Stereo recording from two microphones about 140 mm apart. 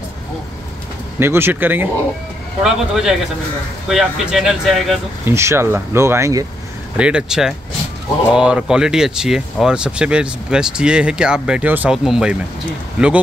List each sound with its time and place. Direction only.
1.2 s speech: 15° right (ahead or behind)
2.6 s speech: centre (ahead or behind)
5.2 s speech: 20° right (ahead or behind)
7.0 s speech: 10° right (ahead or behind)